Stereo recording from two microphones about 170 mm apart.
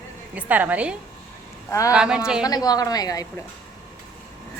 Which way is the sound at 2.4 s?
20° left (ahead or behind).